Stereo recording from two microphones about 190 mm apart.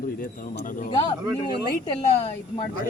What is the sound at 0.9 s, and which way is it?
Speech, 25° left (ahead or behind).